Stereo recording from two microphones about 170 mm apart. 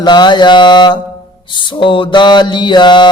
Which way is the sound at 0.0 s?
25° left (ahead or behind).